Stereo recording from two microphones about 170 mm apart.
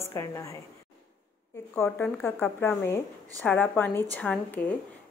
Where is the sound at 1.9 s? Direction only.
5° left (ahead or behind).